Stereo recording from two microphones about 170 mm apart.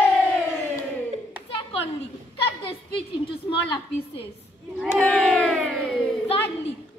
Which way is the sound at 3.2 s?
35° left (ahead or behind).